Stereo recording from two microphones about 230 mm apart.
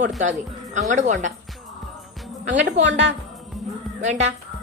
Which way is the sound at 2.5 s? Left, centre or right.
Right.